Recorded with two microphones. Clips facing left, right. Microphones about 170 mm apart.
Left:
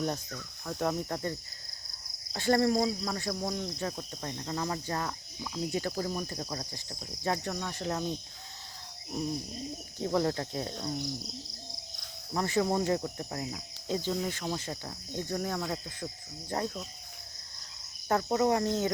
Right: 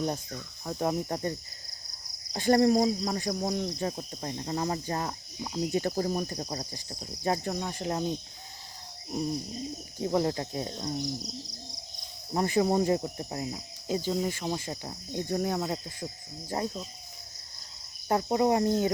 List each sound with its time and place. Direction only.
0.0 s speech: 20° right (ahead or behind)
6.0 s speech: 35° right (ahead or behind)
6.2 s speech: 25° right (ahead or behind)
10.0 s speech: 15° right (ahead or behind)
12.3 s speech: 20° right (ahead or behind)
13.8 s speech: 10° right (ahead or behind); by 15.8 s 25° right (ahead or behind)
16.5 s speech: 15° right (ahead or behind)
18.1 s speech: 20° right (ahead or behind)